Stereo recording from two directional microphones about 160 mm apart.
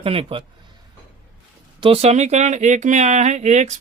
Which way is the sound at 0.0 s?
35° right (ahead or behind).